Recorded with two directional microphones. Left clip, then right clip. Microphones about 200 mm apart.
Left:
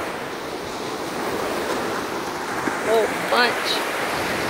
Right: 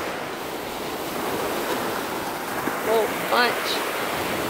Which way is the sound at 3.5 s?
50° right (ahead or behind).